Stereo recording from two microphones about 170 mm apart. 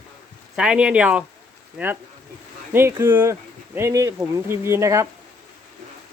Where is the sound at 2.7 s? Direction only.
15° right (ahead or behind).